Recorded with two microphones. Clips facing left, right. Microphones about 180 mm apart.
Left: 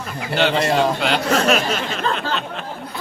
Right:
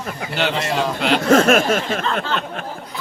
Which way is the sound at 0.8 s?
Centre (ahead or behind).